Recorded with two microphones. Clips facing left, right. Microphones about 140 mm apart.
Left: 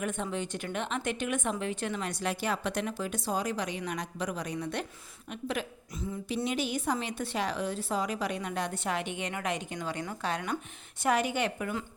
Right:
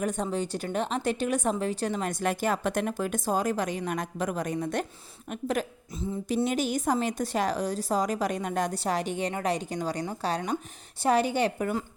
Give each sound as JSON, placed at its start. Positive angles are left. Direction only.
{"t": 0.0, "sound": "a woman's voice", "side_deg": -35}